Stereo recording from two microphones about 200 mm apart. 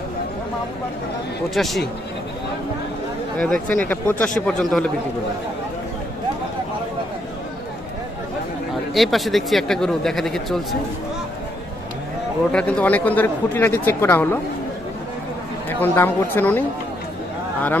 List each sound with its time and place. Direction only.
1.5 s speech: centre (ahead or behind)
3.5 s speech: 45° right (ahead or behind)
3.8 s speech: 10° left (ahead or behind)
8.9 s speech: centre (ahead or behind)
12.5 s speech: 5° left (ahead or behind)
15.8 s speech: 10° left (ahead or behind)